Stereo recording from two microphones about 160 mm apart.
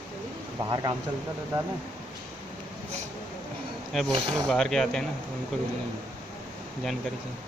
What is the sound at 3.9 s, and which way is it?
Speech, centre (ahead or behind).